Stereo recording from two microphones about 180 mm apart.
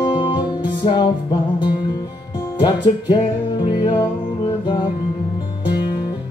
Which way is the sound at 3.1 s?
25° left (ahead or behind).